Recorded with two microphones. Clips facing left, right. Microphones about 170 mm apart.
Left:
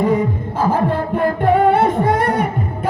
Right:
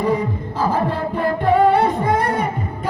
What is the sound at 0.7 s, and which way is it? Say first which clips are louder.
Music: left 4 dB; 50° left (ahead or behind).